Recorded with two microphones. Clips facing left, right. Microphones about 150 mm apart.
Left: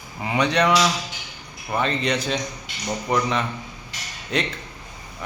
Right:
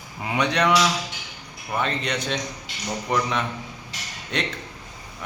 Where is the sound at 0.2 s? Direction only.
Centre (ahead or behind).